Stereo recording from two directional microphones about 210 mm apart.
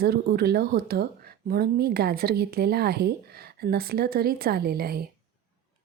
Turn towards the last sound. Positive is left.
turn(degrees=-45)  # may be behind; listen again after turning